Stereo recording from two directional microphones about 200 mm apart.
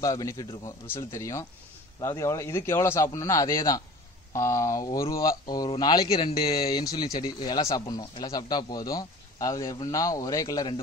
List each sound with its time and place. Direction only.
0.0 s a man's voice: 15° left (ahead or behind)